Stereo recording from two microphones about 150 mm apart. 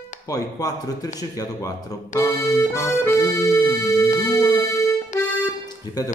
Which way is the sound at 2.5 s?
20° left (ahead or behind).